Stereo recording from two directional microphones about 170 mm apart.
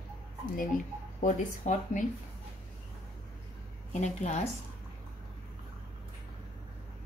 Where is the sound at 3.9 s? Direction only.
45° left (ahead or behind).